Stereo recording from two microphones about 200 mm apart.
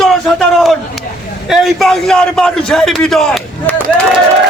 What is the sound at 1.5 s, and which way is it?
A man's voice, centre (ahead or behind).